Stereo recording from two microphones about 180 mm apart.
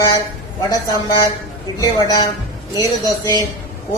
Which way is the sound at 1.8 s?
20° left (ahead or behind).